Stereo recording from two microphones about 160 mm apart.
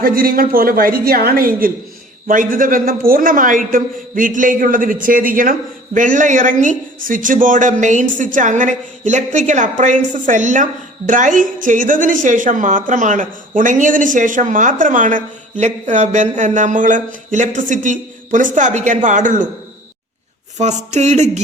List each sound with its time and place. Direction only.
0.0 s a man's voice: 65° right (ahead or behind)
20.6 s a woman's voice: 45° right (ahead or behind)